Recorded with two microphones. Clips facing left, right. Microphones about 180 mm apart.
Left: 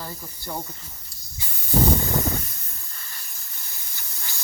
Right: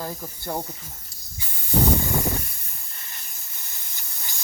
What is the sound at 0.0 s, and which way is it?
Speech, 50° right (ahead or behind).